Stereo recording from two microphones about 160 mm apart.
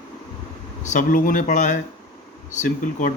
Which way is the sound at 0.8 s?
50° left (ahead or behind).